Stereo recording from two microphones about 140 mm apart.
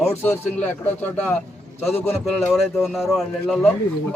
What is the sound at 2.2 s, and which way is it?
Speech, centre (ahead or behind).